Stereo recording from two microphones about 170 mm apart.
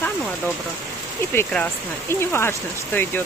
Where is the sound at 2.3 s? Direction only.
15° left (ahead or behind).